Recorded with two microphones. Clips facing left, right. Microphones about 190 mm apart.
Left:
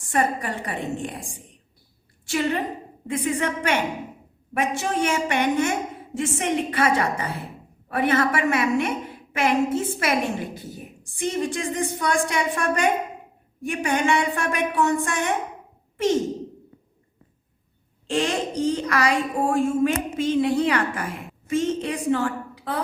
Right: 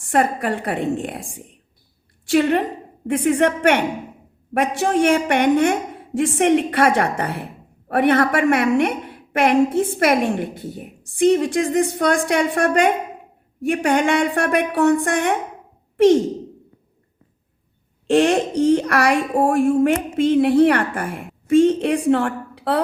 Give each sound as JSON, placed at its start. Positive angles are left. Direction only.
{"t": 0.1, "sound": "a woman's voice", "side_deg": -60}
{"t": 2.3, "sound": "a woman's voice", "side_deg": -60}
{"t": 18.1, "sound": "a woman's voice", "side_deg": -60}